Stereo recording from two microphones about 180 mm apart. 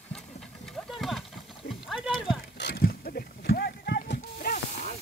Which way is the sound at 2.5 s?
65° left (ahead or behind).